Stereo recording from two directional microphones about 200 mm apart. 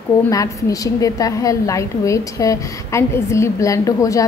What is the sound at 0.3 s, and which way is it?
A woman's voice, 15° left (ahead or behind).